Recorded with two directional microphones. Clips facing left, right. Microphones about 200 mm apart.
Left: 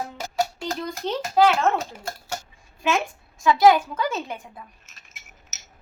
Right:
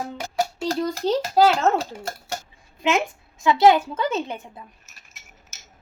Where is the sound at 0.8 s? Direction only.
35° right (ahead or behind).